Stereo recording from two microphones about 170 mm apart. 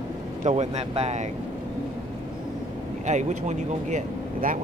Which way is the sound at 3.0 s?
45° right (ahead or behind).